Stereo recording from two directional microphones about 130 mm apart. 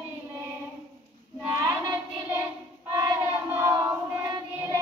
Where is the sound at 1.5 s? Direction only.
30° right (ahead or behind).